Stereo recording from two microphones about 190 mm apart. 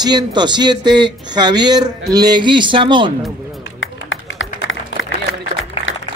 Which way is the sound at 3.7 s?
90° left.